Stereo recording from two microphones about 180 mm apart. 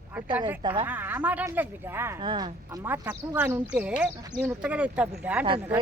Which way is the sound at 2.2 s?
25° right (ahead or behind).